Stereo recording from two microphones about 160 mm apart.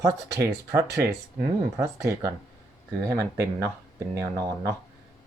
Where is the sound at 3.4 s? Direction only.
20° right (ahead or behind).